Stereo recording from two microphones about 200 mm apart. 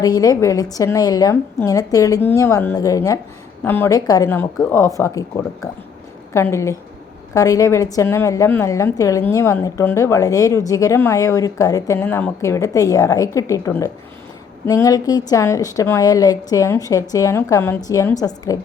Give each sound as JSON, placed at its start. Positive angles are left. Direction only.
{"t": 0.0, "sound": "a woman's voice", "side_deg": 20}